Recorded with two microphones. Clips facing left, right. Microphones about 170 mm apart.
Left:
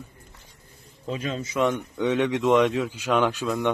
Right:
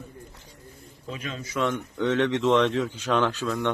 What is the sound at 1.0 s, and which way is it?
Speech, 35° left (ahead or behind).